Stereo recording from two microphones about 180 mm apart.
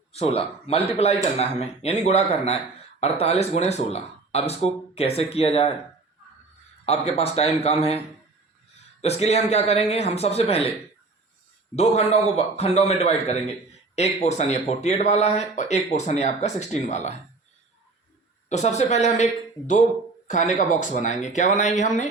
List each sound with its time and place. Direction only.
0.1 s speech: 35° left (ahead or behind)
6.8 s speech: 35° left (ahead or behind)
9.0 s speech: 35° left (ahead or behind)
11.8 s speech: 35° left (ahead or behind)
18.4 s speech: 40° left (ahead or behind)